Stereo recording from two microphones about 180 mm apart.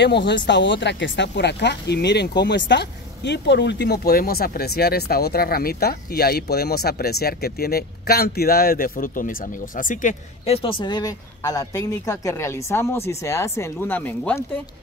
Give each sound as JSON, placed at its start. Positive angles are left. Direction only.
{"t": 0.0, "sound": "speech", "side_deg": 75}